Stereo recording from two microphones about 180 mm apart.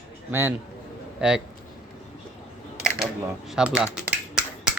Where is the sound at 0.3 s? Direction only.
10° right (ahead or behind).